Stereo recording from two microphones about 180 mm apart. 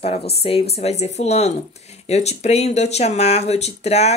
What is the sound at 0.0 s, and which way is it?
Speech, 35° left (ahead or behind).